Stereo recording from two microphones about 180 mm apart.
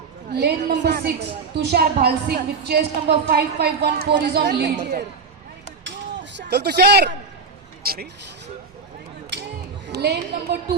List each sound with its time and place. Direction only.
0.3 s a woman's voice: 65° right (ahead or behind)
6.5 s speech: 65° right (ahead or behind)
9.9 s a woman's voice: 65° right (ahead or behind)